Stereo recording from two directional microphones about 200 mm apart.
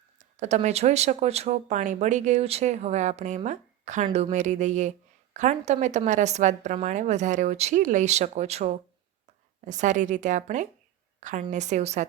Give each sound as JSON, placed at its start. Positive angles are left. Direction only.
{"t": 0.3, "sound": "a woman's voice", "side_deg": -35}